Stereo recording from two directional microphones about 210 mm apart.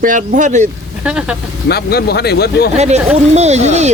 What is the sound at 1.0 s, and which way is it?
Speech, 5° right (ahead or behind).